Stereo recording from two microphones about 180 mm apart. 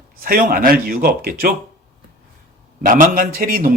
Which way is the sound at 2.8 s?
50° right (ahead or behind).